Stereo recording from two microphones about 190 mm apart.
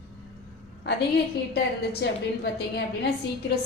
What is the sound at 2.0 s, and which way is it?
A woman's voice, 60° left (ahead or behind).